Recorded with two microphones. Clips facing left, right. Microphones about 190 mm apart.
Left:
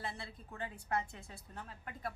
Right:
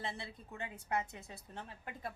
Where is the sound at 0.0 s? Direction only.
25° right (ahead or behind).